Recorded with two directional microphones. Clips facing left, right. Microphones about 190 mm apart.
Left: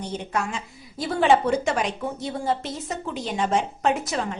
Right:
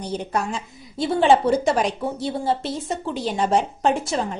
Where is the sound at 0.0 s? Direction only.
35° right (ahead or behind).